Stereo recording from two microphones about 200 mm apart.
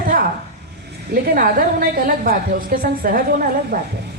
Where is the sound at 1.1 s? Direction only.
45° right (ahead or behind).